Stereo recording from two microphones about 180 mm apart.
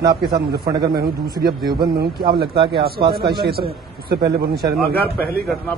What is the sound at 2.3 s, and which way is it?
A man's voice, 60° right (ahead or behind).